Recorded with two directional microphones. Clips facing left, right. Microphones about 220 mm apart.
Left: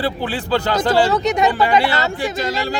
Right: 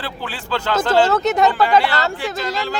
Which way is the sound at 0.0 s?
15° left (ahead or behind).